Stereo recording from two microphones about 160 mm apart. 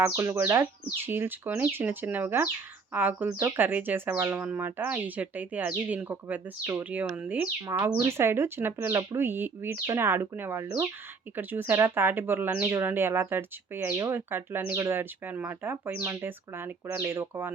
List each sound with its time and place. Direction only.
0.0 s speech: 15° right (ahead or behind)